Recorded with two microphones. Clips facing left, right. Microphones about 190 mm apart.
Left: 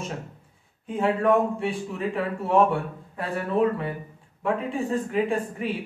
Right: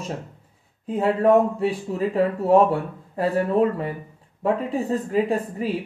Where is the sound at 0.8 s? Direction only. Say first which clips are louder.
Right 3 dB; 35° right (ahead or behind).